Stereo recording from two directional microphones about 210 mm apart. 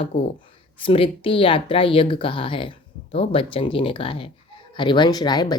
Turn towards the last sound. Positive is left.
turn(degrees=20)  # may be behind; listen again after turning